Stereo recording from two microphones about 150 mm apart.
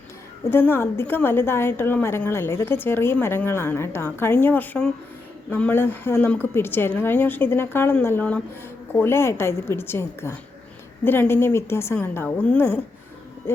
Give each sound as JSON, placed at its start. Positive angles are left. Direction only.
{"t": 0.5, "sound": "a woman's voice", "side_deg": 15}